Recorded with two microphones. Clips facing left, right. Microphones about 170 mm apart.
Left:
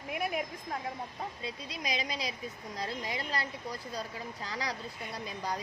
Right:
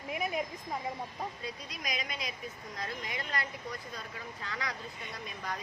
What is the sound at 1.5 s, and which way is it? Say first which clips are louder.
Speech: left 3 dB; 30° left (ahead or behind).